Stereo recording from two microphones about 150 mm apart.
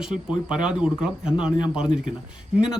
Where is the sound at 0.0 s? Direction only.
5° right (ahead or behind).